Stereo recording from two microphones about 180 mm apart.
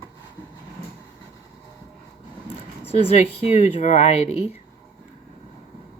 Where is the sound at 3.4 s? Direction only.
40° left (ahead or behind).